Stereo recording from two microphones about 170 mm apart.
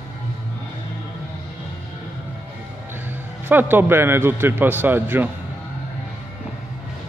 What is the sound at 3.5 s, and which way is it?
A man's voice, 10° right (ahead or behind).